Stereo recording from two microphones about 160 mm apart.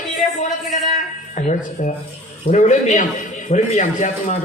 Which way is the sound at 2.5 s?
50° left (ahead or behind).